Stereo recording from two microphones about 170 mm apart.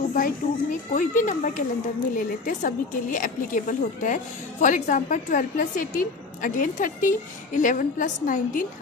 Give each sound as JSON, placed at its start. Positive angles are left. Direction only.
{"t": 0.1, "sound": "a woman's voice", "side_deg": 50}